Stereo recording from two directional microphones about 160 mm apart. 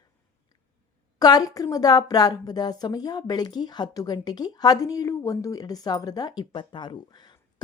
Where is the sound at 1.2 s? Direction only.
25° left (ahead or behind).